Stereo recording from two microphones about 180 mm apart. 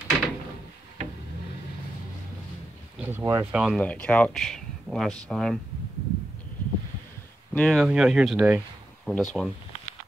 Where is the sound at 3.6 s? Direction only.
5° left (ahead or behind).